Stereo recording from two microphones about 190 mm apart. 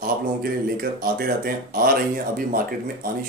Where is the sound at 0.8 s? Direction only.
50° right (ahead or behind).